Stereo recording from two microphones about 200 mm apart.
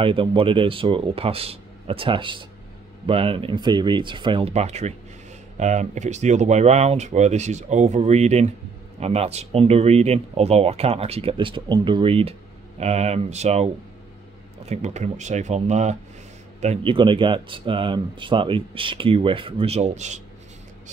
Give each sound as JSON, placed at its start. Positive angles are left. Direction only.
{"t": 0.0, "sound": "speech", "side_deg": -25}
{"t": 14.7, "sound": "speech", "side_deg": -35}